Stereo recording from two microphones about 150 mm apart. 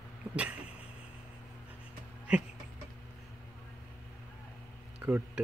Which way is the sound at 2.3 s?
5° right (ahead or behind).